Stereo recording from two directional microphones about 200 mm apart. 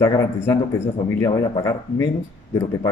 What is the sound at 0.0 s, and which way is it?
A man's voice, 15° left (ahead or behind).